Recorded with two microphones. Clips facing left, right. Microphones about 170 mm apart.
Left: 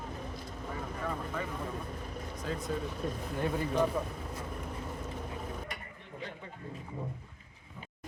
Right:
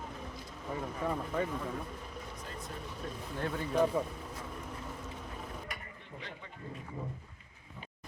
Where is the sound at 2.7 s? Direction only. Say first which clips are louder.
Left 12 dB; 90° left.